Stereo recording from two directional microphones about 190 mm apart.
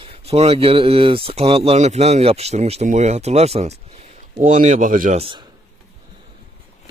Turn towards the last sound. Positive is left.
turn(degrees=-25)  # may be behind; listen again after turning